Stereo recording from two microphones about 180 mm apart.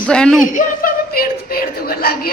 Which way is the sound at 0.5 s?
50° left (ahead or behind).